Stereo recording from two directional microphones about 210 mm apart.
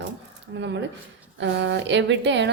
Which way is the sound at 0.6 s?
55° right (ahead or behind).